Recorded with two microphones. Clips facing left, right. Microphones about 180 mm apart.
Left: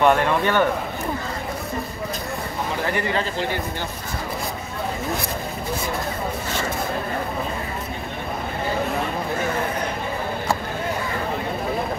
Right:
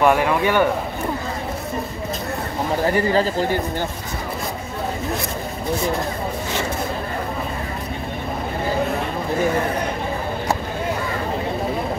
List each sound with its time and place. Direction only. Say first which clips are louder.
0.0 s speech: right 1 dB; 5° right (ahead or behind)
2.9 s speech: right 7 dB; 35° right (ahead or behind)